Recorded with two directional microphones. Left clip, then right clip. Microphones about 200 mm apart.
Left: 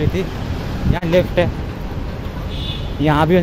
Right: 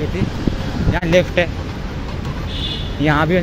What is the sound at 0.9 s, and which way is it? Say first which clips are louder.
Speech: right 1 dB; 10° left (ahead or behind).